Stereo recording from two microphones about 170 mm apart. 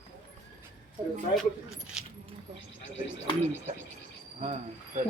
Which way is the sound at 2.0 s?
5° right (ahead or behind).